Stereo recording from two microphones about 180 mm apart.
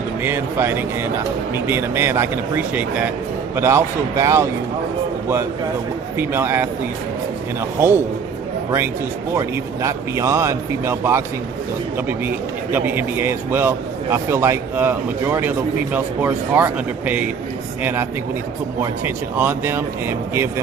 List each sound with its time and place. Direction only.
0.2 s a man's voice: 10° right (ahead or behind)
6.1 s a man's voice: 10° right (ahead or behind)
7.8 s a man's voice: 10° right (ahead or behind)
9.3 s a man's voice: 15° right (ahead or behind)
18.8 s a man's voice: 10° right (ahead or behind)